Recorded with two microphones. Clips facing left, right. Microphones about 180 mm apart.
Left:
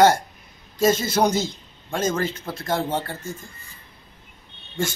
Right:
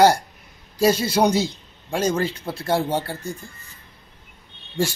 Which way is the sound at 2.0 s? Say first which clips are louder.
Right 2 dB; 30° right (ahead or behind).